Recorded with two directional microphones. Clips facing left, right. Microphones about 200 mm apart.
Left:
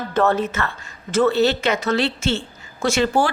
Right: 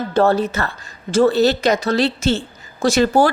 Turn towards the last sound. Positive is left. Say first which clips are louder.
# right 4 dB
turn(degrees=-40)  # may be behind; listen again after turning